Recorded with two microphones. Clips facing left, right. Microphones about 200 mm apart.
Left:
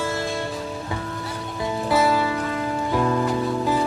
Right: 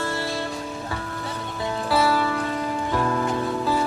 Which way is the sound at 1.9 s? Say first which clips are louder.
Left 1 dB; 20° left (ahead or behind).